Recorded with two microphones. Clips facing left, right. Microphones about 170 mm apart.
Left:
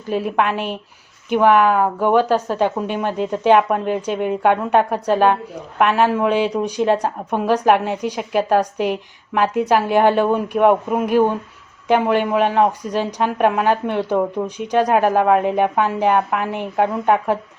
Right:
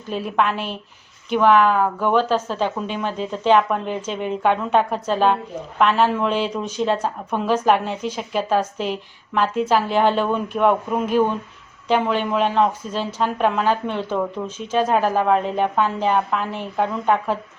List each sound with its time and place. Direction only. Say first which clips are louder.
0.1 s a woman's voice: left 3 dB; 10° left (ahead or behind)
5.8 s a woman's voice: left 2 dB; 10° left (ahead or behind)
15.2 s speech: left 3 dB; 60° left (ahead or behind)
15.4 s a woman's voice: left 3 dB; 10° left (ahead or behind)